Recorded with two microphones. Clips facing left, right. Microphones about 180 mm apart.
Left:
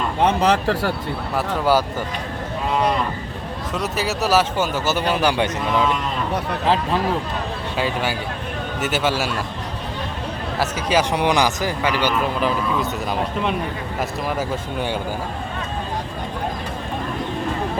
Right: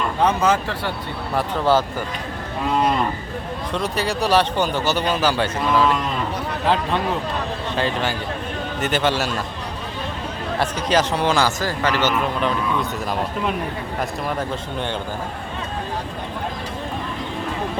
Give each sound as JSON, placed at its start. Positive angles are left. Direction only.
{"t": 0.3, "sound": "speech", "side_deg": 35}
{"t": 1.4, "sound": "speech", "side_deg": 10}
{"t": 3.7, "sound": "speech", "side_deg": 5}
{"t": 7.8, "sound": "speech", "side_deg": 10}
{"t": 10.6, "sound": "speech", "side_deg": 10}